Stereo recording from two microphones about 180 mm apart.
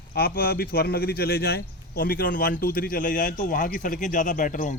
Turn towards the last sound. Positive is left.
turn(degrees=45)  # may be behind; listen again after turning